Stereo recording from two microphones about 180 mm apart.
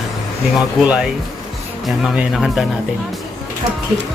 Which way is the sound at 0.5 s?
5° right (ahead or behind).